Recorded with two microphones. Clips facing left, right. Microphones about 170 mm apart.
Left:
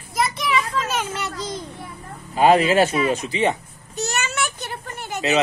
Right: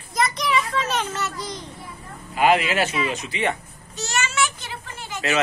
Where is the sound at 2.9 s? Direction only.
45° left (ahead or behind).